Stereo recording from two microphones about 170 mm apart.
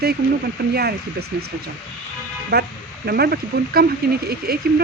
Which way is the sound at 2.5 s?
70° right (ahead or behind).